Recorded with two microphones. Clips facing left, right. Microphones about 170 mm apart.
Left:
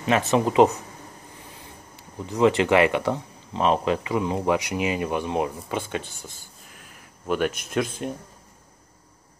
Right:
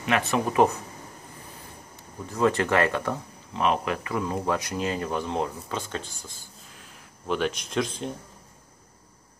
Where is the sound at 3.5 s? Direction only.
30° left (ahead or behind); by 5.8 s 15° left (ahead or behind).